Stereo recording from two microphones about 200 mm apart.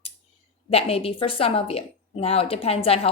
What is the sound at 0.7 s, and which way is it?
A woman's voice, 30° left (ahead or behind).